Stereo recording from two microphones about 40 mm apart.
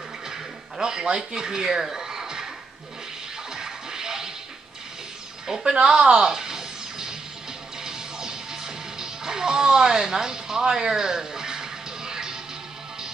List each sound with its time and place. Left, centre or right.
0.3 s a sound: centre
3.5 s music: centre
5.5 s speech: centre
5.8 s music: right